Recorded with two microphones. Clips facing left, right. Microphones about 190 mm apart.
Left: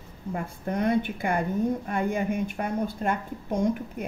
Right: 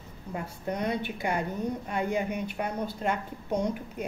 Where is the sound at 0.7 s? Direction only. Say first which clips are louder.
Left 7 dB; 50° left (ahead or behind).